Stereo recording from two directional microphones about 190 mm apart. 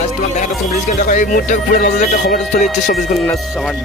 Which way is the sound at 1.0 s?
45° left (ahead or behind).